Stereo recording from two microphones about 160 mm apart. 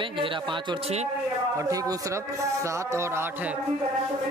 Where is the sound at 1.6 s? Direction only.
20° right (ahead or behind).